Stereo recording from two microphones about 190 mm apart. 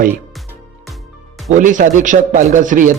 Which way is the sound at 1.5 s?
40° right (ahead or behind).